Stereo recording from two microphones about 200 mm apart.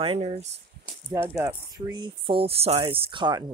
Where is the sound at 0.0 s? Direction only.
30° right (ahead or behind).